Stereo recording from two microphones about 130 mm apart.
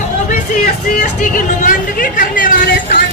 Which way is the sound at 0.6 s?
90° left.